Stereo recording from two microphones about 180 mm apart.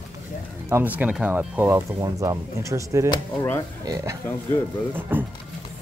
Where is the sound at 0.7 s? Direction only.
10° right (ahead or behind).